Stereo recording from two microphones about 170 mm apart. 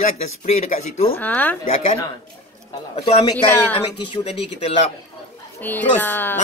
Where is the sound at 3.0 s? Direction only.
25° left (ahead or behind).